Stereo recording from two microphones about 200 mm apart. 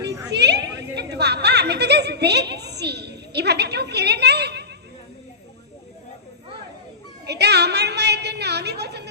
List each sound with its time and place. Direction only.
0.3 s a woman's voice: 55° right (ahead or behind)
1.1 s chuckle: 55° right (ahead or behind)
7.3 s a sound: 55° right (ahead or behind)